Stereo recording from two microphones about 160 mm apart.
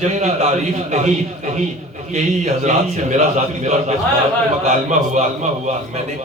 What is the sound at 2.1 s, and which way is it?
A man's voice, 45° right (ahead or behind).